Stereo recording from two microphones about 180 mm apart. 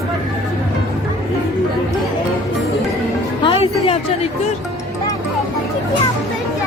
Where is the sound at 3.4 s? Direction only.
30° left (ahead or behind).